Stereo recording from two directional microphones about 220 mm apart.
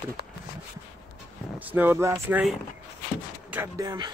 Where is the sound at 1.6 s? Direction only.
10° right (ahead or behind).